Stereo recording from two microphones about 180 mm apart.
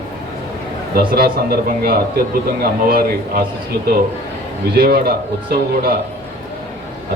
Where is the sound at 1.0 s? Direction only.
55° right (ahead or behind).